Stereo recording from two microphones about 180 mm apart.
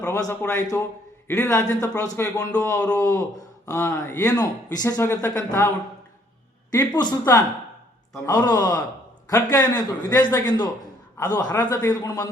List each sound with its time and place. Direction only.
0.0 s a man's voice: 10° left (ahead or behind)
6.7 s a man's voice: 20° left (ahead or behind)